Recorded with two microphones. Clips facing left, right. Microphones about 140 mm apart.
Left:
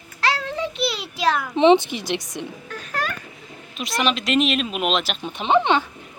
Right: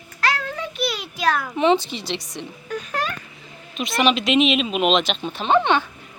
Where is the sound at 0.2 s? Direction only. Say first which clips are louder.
Left 1 dB; 30° left (ahead or behind).